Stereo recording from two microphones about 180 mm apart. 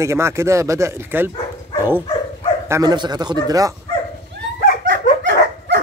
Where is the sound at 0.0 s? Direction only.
15° right (ahead or behind).